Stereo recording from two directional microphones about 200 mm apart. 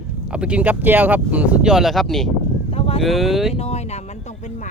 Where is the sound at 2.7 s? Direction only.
30° left (ahead or behind).